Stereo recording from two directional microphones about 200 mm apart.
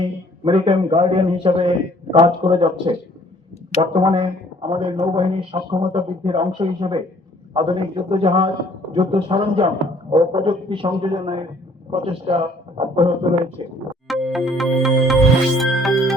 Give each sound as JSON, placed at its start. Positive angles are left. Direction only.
{"t": 0.4, "sound": "speech", "side_deg": -25}
{"t": 14.1, "sound": "music", "side_deg": 0}